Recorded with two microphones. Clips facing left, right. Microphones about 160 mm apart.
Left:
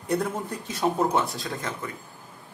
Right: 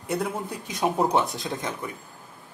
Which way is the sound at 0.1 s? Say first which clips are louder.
Left 1 dB; 10° right (ahead or behind).